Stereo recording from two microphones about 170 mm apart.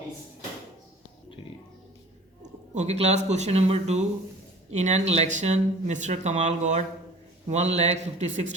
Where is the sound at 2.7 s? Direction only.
40° right (ahead or behind).